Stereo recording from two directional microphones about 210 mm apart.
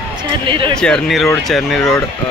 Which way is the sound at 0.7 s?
5° left (ahead or behind).